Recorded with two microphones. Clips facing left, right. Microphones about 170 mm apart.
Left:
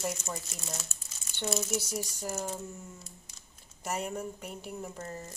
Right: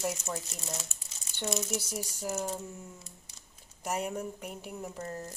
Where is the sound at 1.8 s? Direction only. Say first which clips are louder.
Left 2 dB; 10° right (ahead or behind).